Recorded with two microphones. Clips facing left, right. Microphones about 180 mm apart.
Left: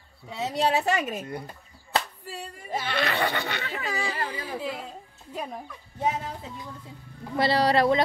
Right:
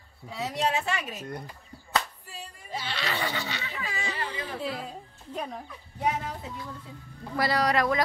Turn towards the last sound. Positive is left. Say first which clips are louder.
# left 4 dB
turn(degrees=30)  # may be behind; listen again after turning